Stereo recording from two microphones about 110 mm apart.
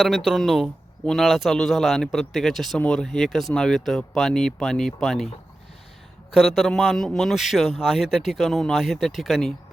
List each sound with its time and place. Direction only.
0.3 s a man's voice: centre (ahead or behind)
6.3 s a man's voice: centre (ahead or behind)